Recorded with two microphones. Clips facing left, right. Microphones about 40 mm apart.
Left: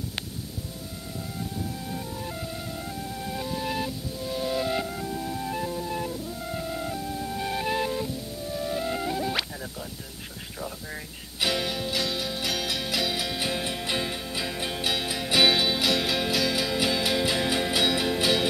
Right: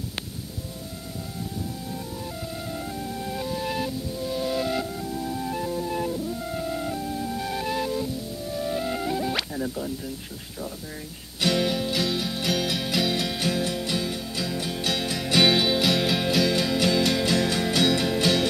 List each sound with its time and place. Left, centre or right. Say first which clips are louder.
2.7 s music: right 3 dB; centre
4.8 s music: right 1 dB; centre
5.2 s music: right 3 dB; centre
7.3 s music: left 2 dB; centre
8.5 s music: right 1 dB; centre
10.6 s music: even; centre
13.4 s music: right 3 dB; centre
14.9 s music: right 2 dB; centre